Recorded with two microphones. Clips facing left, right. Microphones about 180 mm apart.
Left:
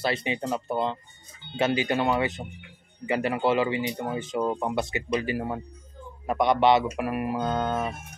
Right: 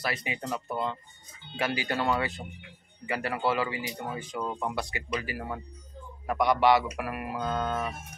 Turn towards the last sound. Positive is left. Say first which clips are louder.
# left 3 dB
turn(degrees=25)  # may be behind; listen again after turning